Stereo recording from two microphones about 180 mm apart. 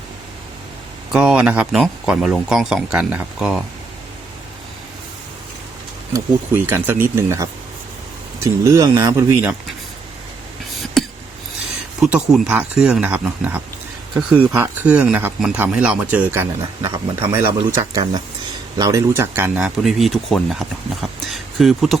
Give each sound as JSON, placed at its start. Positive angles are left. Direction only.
{"t": 1.1, "sound": "speech", "side_deg": -5}
{"t": 6.1, "sound": "speech", "side_deg": -10}
{"t": 8.6, "sound": "speech", "side_deg": -15}
{"t": 11.0, "sound": "a sound", "side_deg": 0}
{"t": 11.9, "sound": "speech", "side_deg": -5}
{"t": 17.7, "sound": "speech", "side_deg": -25}
{"t": 18.8, "sound": "speech", "side_deg": -15}
{"t": 19.5, "sound": "speech", "side_deg": 0}